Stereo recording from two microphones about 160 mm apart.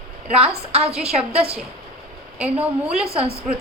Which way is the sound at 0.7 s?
40° right (ahead or behind).